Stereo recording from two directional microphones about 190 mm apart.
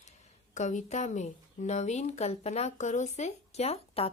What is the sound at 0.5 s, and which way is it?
A woman's voice, 40° left (ahead or behind).